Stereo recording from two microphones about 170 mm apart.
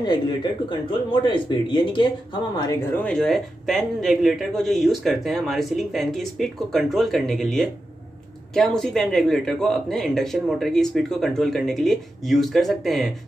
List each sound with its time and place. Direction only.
0.0 s speech: 25° left (ahead or behind)
3.0 s speech: 5° left (ahead or behind)